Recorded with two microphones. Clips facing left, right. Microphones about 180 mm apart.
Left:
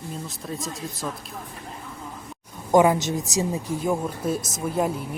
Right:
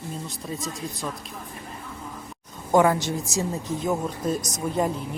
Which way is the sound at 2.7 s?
15° left (ahead or behind).